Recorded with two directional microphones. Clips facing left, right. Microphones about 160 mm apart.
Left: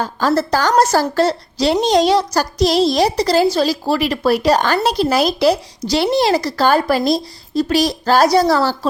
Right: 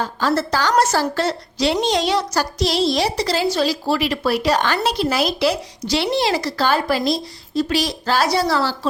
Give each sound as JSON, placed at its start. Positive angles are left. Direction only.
{"t": 0.0, "sound": "a woman's voice", "side_deg": 45}